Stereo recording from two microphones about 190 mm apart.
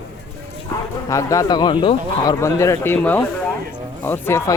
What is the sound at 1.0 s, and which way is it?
A man's voice, 15° left (ahead or behind).